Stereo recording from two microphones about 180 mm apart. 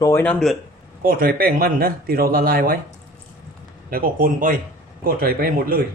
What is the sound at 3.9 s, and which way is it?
Speech, 55° right (ahead or behind).